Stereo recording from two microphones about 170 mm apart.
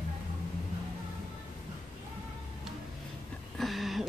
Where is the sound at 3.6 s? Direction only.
Centre (ahead or behind).